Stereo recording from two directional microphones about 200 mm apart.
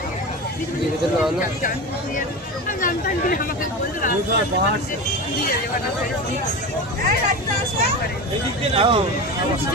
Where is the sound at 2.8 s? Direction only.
40° left (ahead or behind).